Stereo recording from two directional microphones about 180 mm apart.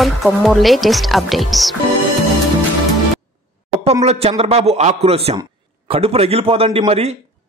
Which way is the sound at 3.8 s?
35° right (ahead or behind).